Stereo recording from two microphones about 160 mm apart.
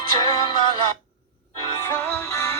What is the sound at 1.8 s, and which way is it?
Music, 10° left (ahead or behind).